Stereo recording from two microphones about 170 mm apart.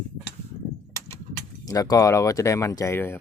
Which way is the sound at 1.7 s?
20° left (ahead or behind).